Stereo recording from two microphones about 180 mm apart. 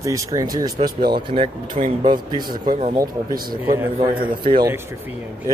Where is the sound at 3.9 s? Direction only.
25° right (ahead or behind).